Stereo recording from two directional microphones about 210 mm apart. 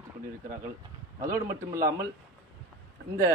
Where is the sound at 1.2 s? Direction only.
15° right (ahead or behind).